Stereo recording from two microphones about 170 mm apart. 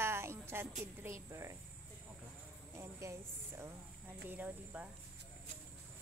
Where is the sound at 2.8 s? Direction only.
15° right (ahead or behind).